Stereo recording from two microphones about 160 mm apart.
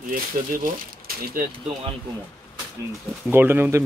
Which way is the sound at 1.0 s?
70° right (ahead or behind).